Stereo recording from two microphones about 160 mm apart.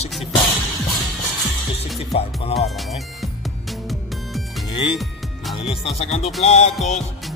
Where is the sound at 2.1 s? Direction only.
40° left (ahead or behind).